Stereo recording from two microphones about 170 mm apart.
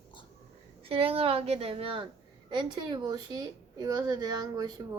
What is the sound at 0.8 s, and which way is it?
A woman's voice, 35° right (ahead or behind).